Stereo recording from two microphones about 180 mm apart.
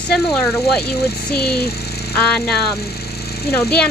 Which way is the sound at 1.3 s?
65° left (ahead or behind).